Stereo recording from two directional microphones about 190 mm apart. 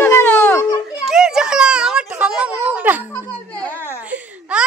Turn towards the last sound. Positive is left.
turn(degrees=-5)  # may be behind; listen again after turning